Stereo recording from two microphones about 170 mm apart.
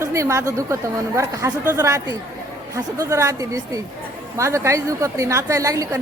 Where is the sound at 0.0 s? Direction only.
15° right (ahead or behind).